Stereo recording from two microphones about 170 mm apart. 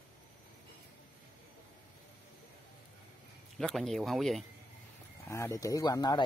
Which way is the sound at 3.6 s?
Centre (ahead or behind).